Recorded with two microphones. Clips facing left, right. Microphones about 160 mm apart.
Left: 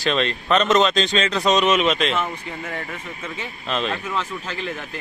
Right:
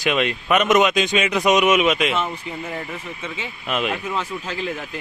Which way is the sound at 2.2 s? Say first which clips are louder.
Right 1 dB; 20° right (ahead or behind).